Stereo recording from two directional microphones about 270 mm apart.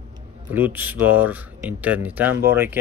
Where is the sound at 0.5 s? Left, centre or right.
Centre.